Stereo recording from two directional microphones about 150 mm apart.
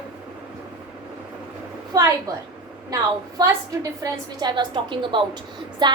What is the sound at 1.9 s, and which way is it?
A woman's voice, 25° right (ahead or behind).